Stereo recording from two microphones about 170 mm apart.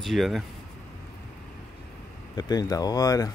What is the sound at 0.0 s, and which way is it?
Speech, centre (ahead or behind).